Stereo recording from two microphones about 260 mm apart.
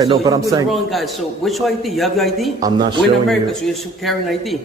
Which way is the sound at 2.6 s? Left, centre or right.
Centre.